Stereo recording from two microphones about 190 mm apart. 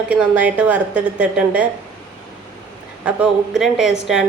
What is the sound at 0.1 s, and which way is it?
A woman's voice, 5° right (ahead or behind).